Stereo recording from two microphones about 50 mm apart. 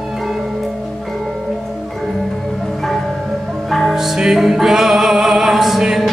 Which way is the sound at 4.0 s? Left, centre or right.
Centre.